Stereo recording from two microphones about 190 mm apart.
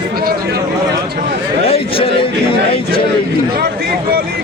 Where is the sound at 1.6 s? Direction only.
30° left (ahead or behind).